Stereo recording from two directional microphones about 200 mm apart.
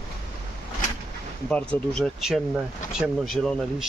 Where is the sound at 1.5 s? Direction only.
5° left (ahead or behind).